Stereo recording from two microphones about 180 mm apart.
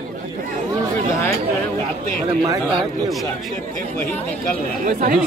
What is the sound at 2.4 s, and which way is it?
Speech, 20° right (ahead or behind).